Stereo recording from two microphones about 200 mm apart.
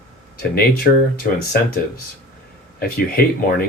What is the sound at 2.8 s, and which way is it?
Speech, 50° left (ahead or behind).